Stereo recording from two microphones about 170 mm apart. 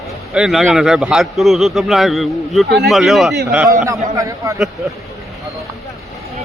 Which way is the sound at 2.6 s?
75° right (ahead or behind).